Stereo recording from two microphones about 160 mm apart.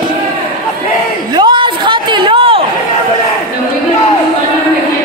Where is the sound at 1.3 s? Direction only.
30° right (ahead or behind).